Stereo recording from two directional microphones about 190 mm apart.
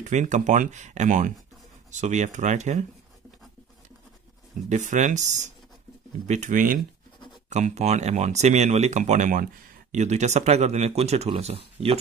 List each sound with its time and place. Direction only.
0.0 s speech: 40° right (ahead or behind)
4.6 s speech: 40° right (ahead or behind)